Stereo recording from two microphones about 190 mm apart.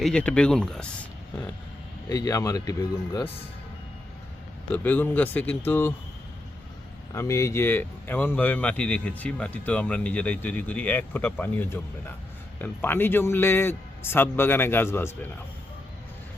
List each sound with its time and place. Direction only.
0.0 s speech: 5° left (ahead or behind)
2.0 s speech: 20° left (ahead or behind)
4.7 s speech: 10° left (ahead or behind)
7.1 s speech: 15° left (ahead or behind)